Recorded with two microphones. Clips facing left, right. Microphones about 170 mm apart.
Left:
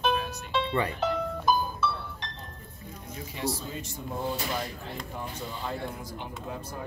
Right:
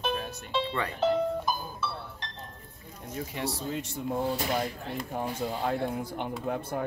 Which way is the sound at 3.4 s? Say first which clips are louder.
Left 1 dB; 65° right (ahead or behind).